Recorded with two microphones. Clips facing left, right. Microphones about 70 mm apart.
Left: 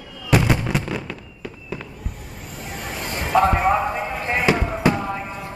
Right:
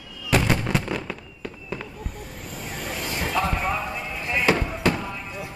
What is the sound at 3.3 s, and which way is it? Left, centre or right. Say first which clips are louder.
Basketball bounce: left 9 dB; left.